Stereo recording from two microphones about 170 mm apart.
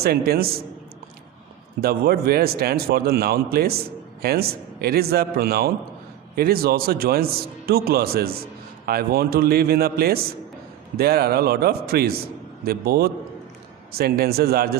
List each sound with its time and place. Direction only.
0.0 s a man's voice: 65° right (ahead or behind)
1.8 s a man's voice: 65° right (ahead or behind)